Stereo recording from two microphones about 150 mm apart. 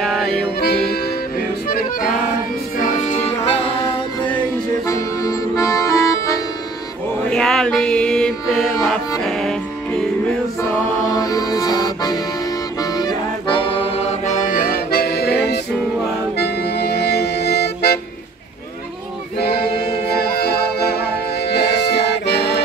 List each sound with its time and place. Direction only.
0.0 s music: centre (ahead or behind)
0.6 s music: 90° left
1.7 s accordion: 75° left (ahead or behind)
2.8 s music: 55° left (ahead or behind)
4.8 s accordion: 20° left (ahead or behind)
7.2 s mantra: 5° left (ahead or behind)
9.2 s music: 5° left (ahead or behind)
10.6 s accordion: 25° left (ahead or behind)
12.9 s music: 30° left (ahead or behind); by 17.9 s 90° left
19.4 s music: 90° left